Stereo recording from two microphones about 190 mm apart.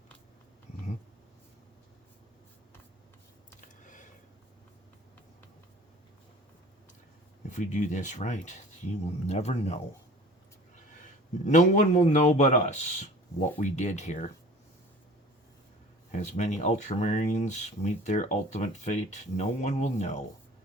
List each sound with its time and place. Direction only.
3.8 s a sound: 40° left (ahead or behind)
7.4 s speech: 40° left (ahead or behind)
10.9 s a man's voice: 40° left (ahead or behind)
16.1 s speech: 40° left (ahead or behind)